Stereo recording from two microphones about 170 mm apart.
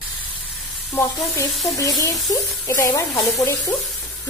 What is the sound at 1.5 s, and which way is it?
Speech, centre (ahead or behind).